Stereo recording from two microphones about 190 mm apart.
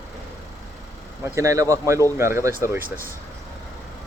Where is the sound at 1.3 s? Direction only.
15° right (ahead or behind).